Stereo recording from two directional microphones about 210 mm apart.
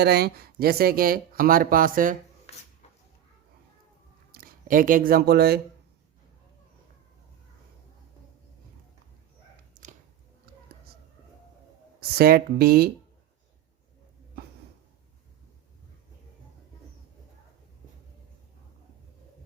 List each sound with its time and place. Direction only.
0.0 s speech: 50° right (ahead or behind)
4.3 s speech: 40° right (ahead or behind)
11.9 s speech: 45° right (ahead or behind)